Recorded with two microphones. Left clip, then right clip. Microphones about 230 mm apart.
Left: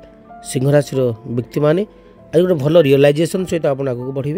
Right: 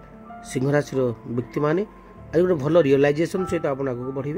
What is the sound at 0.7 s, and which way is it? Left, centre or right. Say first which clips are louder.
A man's voice: left 7 dB; left.